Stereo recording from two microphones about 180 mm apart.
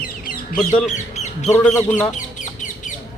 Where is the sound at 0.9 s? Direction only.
40° left (ahead or behind).